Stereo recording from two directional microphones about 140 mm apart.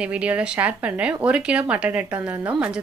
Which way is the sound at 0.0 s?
10° right (ahead or behind).